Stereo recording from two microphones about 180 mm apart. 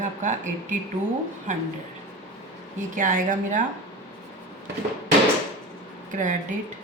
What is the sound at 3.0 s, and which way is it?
Speech, 45° right (ahead or behind).